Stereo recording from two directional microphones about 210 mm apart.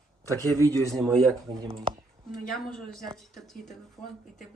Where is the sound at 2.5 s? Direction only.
Centre (ahead or behind).